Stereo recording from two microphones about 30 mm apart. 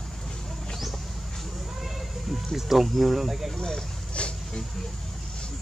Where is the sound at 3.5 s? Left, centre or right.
Left.